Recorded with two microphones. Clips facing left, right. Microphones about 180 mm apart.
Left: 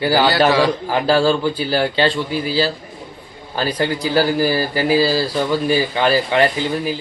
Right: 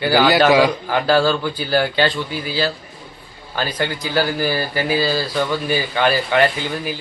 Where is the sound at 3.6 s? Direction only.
35° left (ahead or behind).